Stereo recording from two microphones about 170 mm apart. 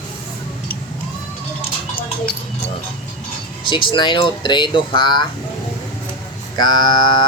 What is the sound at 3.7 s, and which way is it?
Speech, 30° left (ahead or behind).